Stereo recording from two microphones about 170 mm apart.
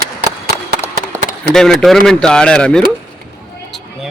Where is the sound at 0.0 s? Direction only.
65° right (ahead or behind).